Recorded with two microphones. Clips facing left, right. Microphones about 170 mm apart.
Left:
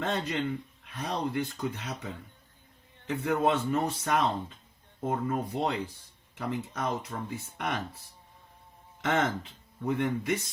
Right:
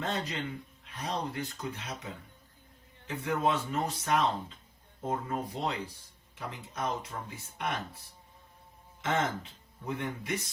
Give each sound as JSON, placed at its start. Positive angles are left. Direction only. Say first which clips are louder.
{"t": 0.0, "sound": "speech", "louder": "left 4 dB", "side_deg": 60}
{"t": 3.1, "sound": "speech", "louder": "left 3 dB", "side_deg": 60}
{"t": 9.0, "sound": "speech", "louder": "left 3 dB", "side_deg": 55}